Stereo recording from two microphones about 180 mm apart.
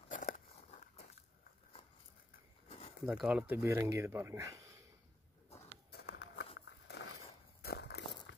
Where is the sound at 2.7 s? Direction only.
35° left (ahead or behind).